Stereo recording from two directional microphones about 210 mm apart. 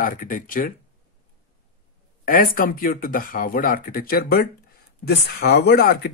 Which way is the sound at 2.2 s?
40° left (ahead or behind).